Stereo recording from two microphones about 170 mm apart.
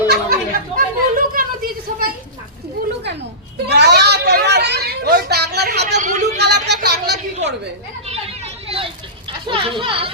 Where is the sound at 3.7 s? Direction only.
75° right (ahead or behind).